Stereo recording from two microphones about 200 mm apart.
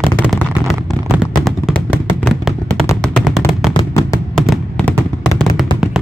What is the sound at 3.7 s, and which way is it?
Fireworks, 15° left (ahead or behind).